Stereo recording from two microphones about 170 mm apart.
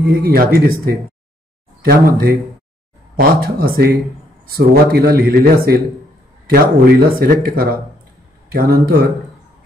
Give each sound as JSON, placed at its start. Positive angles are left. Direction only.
{"t": 0.2, "sound": "speech", "side_deg": -60}
{"t": 1.9, "sound": "speech", "side_deg": -60}